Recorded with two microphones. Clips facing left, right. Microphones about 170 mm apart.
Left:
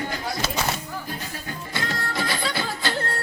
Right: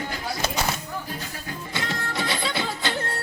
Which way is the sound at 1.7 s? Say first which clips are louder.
Left 1 dB; 25° right (ahead or behind).